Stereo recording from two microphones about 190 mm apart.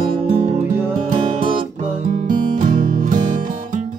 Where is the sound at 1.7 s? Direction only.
40° right (ahead or behind).